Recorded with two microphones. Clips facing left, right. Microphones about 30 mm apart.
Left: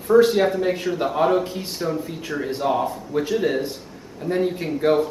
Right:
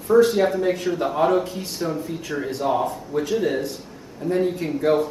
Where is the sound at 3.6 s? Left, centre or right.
Left; by 5.1 s centre.